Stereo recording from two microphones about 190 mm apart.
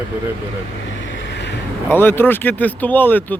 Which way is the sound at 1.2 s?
70° left (ahead or behind).